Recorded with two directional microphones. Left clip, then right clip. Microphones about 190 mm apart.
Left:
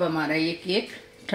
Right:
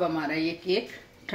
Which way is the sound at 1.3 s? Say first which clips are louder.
Left 3 dB; 50° left (ahead or behind).